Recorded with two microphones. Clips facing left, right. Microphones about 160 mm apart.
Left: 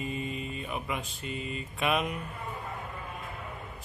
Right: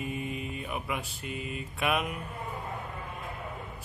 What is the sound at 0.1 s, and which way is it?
Mantra, 65° right (ahead or behind).